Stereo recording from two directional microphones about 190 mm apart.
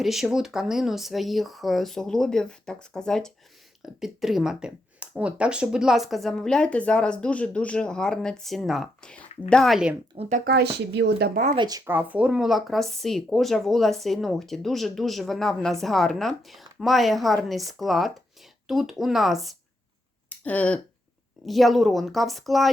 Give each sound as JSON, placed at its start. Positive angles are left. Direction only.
{"t": 0.0, "sound": "speech", "side_deg": 0}
{"t": 10.2, "sound": "speech", "side_deg": -40}
{"t": 11.5, "sound": "speech", "side_deg": -25}
{"t": 11.9, "sound": "speech", "side_deg": -10}